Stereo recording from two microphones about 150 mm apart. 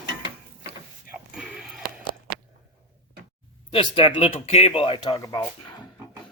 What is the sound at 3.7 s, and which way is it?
Speech, 35° left (ahead or behind).